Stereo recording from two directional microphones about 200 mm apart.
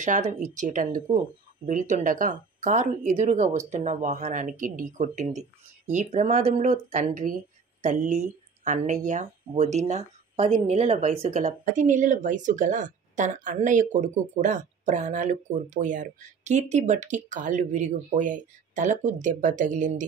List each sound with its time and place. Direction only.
0.0 s speech: 40° right (ahead or behind)